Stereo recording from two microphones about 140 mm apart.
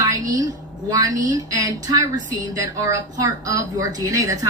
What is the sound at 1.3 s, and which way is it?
A woman's voice, 25° right (ahead or behind).